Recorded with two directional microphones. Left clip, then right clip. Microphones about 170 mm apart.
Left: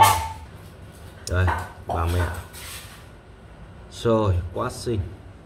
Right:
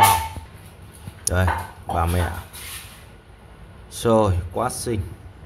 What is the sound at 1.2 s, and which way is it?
Speech, 40° right (ahead or behind).